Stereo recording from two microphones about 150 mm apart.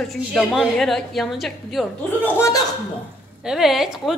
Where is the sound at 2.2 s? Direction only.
20° left (ahead or behind).